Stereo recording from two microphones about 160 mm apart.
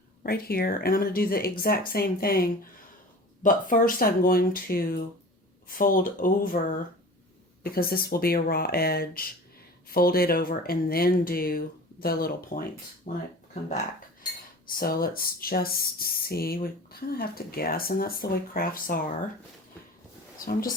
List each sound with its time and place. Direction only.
0.2 s speech: 70° left (ahead or behind)
13.1 s speech: 50° left (ahead or behind)
14.8 s speech: 70° left (ahead or behind)
20.4 s speech: 60° left (ahead or behind)